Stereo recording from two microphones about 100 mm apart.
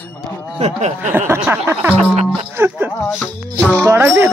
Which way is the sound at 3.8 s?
25° right (ahead or behind).